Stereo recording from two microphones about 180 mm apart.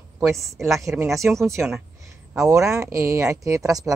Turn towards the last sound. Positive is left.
turn(degrees=-20)  # may be behind; listen again after turning